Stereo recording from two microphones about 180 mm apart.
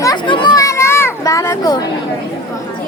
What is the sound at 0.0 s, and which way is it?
Children playing, 25° left (ahead or behind).